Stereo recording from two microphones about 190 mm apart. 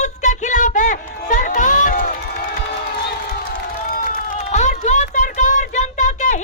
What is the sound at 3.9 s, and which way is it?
Run, 45° left (ahead or behind).